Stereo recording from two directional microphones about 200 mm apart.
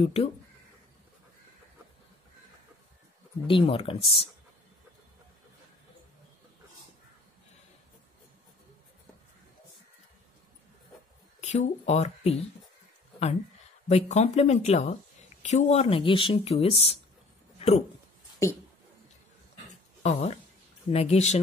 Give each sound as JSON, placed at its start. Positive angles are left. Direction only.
{"t": 0.0, "sound": "a woman's voice", "side_deg": 30}
{"t": 3.4, "sound": "a woman's voice", "side_deg": 25}
{"t": 11.4, "sound": "speech", "side_deg": 35}
{"t": 13.8, "sound": "a woman's voice", "side_deg": 35}
{"t": 17.6, "sound": "a sound", "side_deg": 30}
{"t": 18.4, "sound": "speech", "side_deg": 15}
{"t": 19.7, "sound": "dog", "side_deg": 35}
{"t": 20.9, "sound": "speech", "side_deg": 30}